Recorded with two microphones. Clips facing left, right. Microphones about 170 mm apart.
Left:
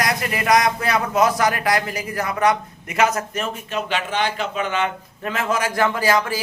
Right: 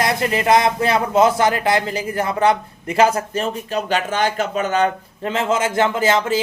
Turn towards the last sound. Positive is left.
turn(degrees=-25)  # may be behind; listen again after turning